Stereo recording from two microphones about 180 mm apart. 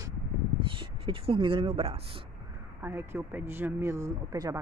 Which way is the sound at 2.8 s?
10° right (ahead or behind).